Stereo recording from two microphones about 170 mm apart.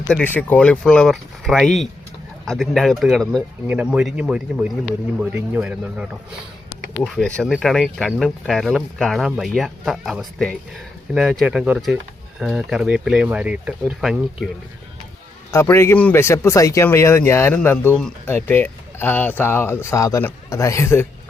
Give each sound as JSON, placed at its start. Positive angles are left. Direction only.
{"t": 0.1, "sound": "speech", "side_deg": 10}
{"t": 6.9, "sound": "speech", "side_deg": 5}
{"t": 15.5, "sound": "speech", "side_deg": 15}